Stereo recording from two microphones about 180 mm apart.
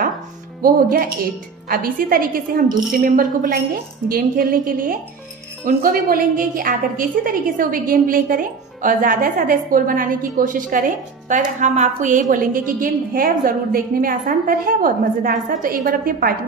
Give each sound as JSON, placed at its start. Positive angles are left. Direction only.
{"t": 0.6, "sound": "a woman's voice", "side_deg": -50}